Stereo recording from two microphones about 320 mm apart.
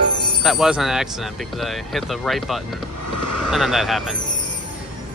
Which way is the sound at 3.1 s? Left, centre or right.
Left.